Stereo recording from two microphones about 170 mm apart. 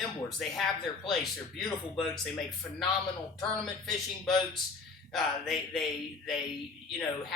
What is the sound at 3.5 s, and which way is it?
Speech, centre (ahead or behind).